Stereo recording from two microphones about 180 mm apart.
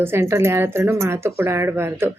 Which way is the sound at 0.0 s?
15° right (ahead or behind).